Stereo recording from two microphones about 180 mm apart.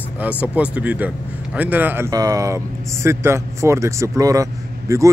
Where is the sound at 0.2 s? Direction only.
10° right (ahead or behind).